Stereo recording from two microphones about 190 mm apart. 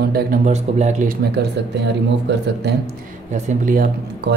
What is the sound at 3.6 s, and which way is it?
Speech, 50° right (ahead or behind).